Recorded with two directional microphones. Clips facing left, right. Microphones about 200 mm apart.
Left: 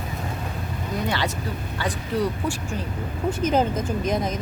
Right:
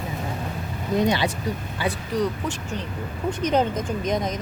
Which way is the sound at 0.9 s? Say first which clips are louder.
Right 5 dB; 20° right (ahead or behind).